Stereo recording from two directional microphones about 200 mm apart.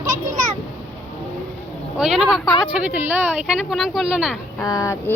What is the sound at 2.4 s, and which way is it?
Speech, 15° left (ahead or behind).